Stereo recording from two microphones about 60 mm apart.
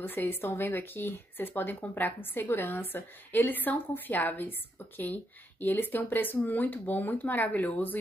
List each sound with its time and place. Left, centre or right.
0.0 s speech: left